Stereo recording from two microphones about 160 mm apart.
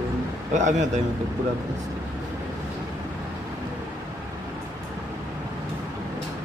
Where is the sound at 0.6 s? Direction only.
50° right (ahead or behind).